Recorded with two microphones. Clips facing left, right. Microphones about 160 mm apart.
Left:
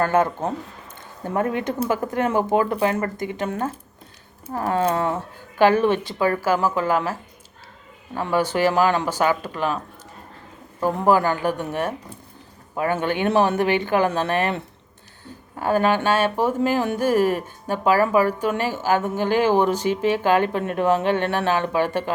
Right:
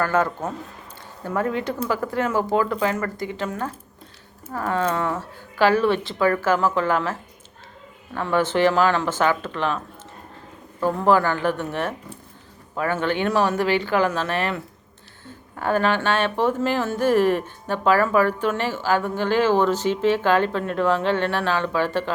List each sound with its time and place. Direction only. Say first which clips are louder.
0.0 s speech: left 2 dB; 20° left (ahead or behind)
4.4 s speech: left 2 dB; 35° left (ahead or behind)
5.1 s speech: left 2 dB; 20° left (ahead or behind)